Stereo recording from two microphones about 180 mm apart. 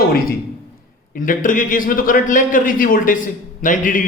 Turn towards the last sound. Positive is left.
turn(degrees=45)  # may be behind; listen again after turning